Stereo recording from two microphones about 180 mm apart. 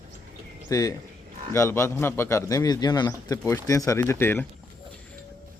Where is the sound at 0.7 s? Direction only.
20° left (ahead or behind).